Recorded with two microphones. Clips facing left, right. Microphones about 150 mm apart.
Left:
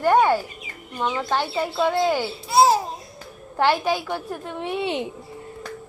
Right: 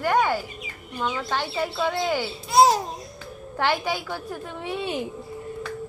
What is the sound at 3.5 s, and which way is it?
A child's voice, 20° left (ahead or behind).